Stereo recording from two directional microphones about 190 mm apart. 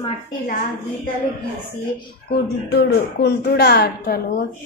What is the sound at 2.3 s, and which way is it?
A woman's voice, 60° left (ahead or behind).